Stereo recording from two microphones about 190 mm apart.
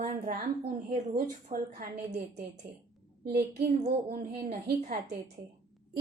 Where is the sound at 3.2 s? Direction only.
55° right (ahead or behind).